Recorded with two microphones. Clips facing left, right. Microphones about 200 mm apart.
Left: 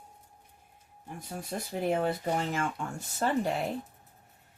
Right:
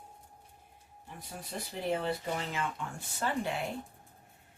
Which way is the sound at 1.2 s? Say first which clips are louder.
Left 5 dB; 45° left (ahead or behind).